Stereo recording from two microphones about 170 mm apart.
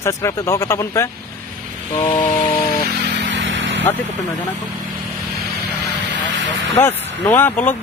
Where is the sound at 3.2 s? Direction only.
90° right.